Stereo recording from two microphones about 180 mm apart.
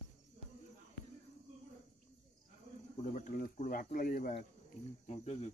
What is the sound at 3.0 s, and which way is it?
Speech, 45° left (ahead or behind).